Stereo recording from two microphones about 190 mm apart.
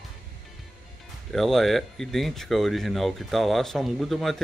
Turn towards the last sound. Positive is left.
turn(degrees=0)  # may be behind; listen again after turning